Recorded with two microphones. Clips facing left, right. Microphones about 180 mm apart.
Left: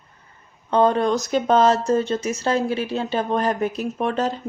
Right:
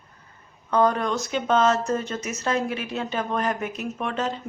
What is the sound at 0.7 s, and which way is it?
Speech, 30° left (ahead or behind).